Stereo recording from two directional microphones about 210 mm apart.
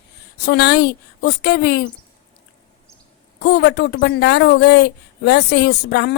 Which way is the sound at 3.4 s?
55° left (ahead or behind).